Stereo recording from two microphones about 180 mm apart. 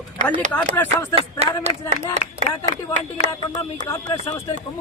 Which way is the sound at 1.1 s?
35° right (ahead or behind).